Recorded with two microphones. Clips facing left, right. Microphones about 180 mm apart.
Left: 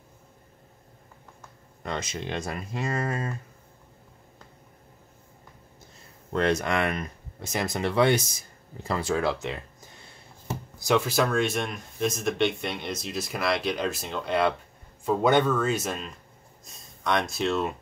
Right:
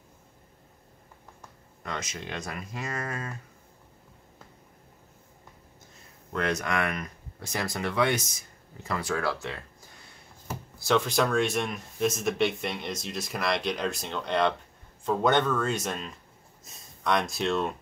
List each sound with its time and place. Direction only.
1.8 s speech: 30° left (ahead or behind)
6.3 s speech: 30° left (ahead or behind); by 17.7 s centre (ahead or behind)